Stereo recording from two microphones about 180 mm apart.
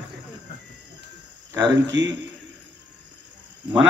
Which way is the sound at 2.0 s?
80° right.